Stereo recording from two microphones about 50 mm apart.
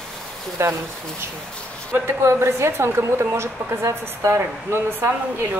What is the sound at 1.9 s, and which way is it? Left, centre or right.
A woman's voice, right.